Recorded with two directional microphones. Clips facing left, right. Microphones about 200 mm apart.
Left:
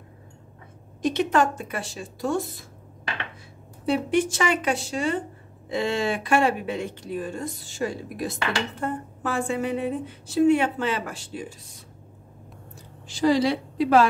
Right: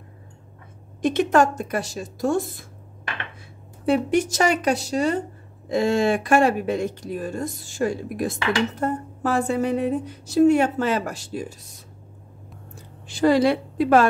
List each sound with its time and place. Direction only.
1.0 s speech: 50° right (ahead or behind)
3.8 s a woman's voice: 45° right (ahead or behind)
13.0 s a woman's voice: 55° right (ahead or behind)